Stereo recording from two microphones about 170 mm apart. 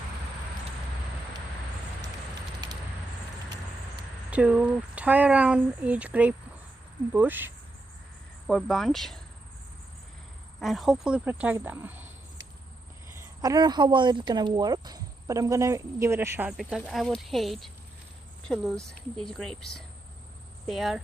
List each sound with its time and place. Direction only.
4.3 s speech: 5° right (ahead or behind)
8.5 s speech: centre (ahead or behind)
10.6 s speech: centre (ahead or behind)
13.4 s speech: 20° right (ahead or behind); by 21.0 s centre (ahead or behind)